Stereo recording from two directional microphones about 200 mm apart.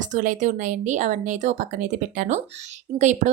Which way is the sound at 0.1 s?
40° right (ahead or behind).